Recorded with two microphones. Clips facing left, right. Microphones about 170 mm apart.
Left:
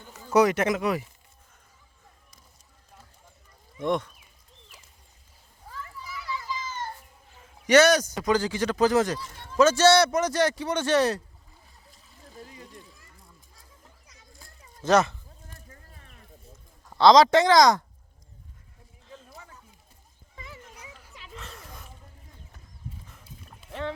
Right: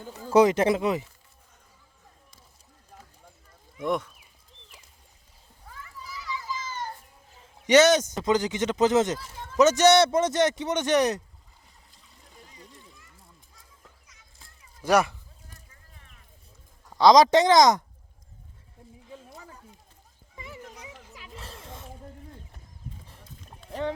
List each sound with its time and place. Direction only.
0.0 s speech: 35° right (ahead or behind)
3.8 s speech: 5° right (ahead or behind)
7.7 s speech: 20° right (ahead or behind)
14.8 s speech: 10° right (ahead or behind)
17.0 s speech: 15° right (ahead or behind)
20.4 s children playing: 20° right (ahead or behind)
21.3 s a sound: 30° right (ahead or behind)
23.0 s livestock: 30° right (ahead or behind)